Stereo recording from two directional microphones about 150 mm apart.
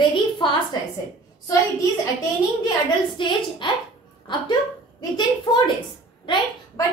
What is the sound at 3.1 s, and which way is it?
Speech, 30° left (ahead or behind).